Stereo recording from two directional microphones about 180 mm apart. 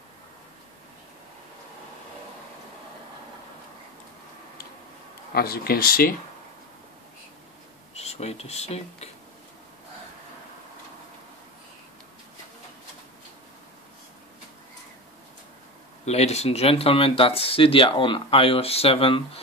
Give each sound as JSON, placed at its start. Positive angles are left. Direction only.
{"t": 5.3, "sound": "speech", "side_deg": 60}
{"t": 7.9, "sound": "speech", "side_deg": 35}
{"t": 16.1, "sound": "speech", "side_deg": 35}